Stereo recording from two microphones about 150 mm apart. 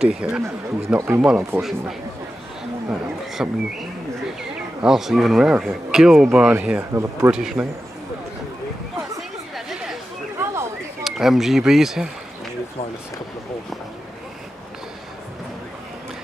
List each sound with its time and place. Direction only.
0.1 s speech: 5° right (ahead or behind)
0.4 s speech: 20° right (ahead or behind)
1.2 s speech: 5° right (ahead or behind)
3.4 s speech: 10° right (ahead or behind)
7.3 s speech: 5° right (ahead or behind)
9.7 s chatter: centre (ahead or behind)
10.3 s a sound: 20° right (ahead or behind)
11.1 s speech: centre (ahead or behind)